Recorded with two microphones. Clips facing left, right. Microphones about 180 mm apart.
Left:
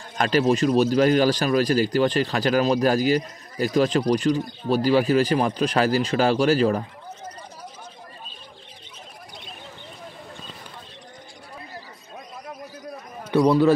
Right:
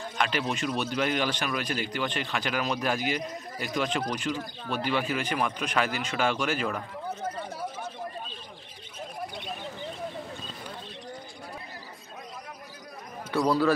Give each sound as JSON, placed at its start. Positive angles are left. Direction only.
{"t": 0.2, "sound": "speech", "side_deg": 40}
{"t": 13.3, "sound": "a man's voice", "side_deg": 20}